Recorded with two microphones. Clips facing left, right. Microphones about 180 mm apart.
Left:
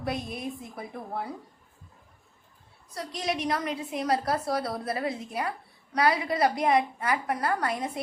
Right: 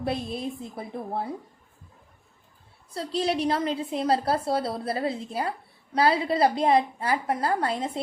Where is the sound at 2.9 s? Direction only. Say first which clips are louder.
Right 5 dB; 30° right (ahead or behind).